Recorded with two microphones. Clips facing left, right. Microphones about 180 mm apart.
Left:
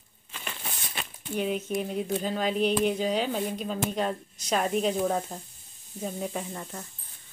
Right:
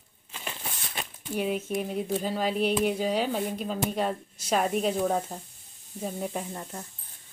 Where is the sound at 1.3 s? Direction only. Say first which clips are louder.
Even; 5° right (ahead or behind).